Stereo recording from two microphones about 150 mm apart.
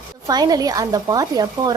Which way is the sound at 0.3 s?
25° right (ahead or behind).